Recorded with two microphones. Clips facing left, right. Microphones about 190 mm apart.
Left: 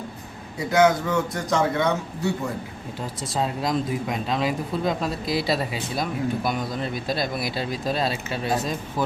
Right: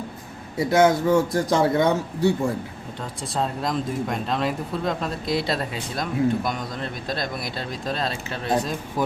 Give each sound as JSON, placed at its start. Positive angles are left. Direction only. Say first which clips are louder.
{"t": 0.7, "sound": "a man's voice", "louder": "right 2 dB", "side_deg": -30}
{"t": 3.3, "sound": "speech", "louder": "left 1 dB", "side_deg": 0}
{"t": 9.0, "sound": "speech", "louder": "right 1 dB", "side_deg": -15}